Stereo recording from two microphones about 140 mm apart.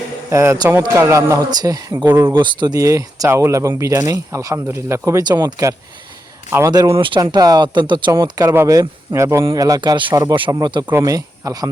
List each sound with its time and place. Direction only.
0.3 s speech: 20° right (ahead or behind); by 7.2 s 35° right (ahead or behind)
7.2 s speech: 25° right (ahead or behind)